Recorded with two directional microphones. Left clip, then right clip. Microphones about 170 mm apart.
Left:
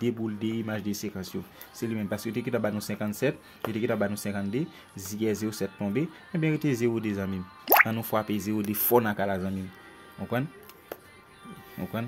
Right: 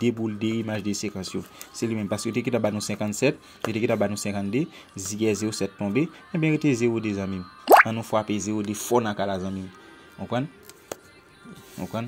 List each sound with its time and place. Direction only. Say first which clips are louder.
0.0 s speech: right 4 dB; 15° right (ahead or behind); by 10.4 s 5° left (ahead or behind)
11.8 s speech: right 3 dB; centre (ahead or behind)